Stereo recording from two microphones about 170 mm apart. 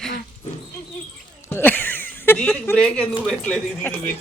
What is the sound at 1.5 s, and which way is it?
Speech, 10° left (ahead or behind).